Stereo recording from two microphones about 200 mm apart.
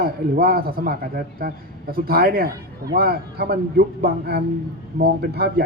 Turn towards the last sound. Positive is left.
turn(degrees=-50)  # may be behind; listen again after turning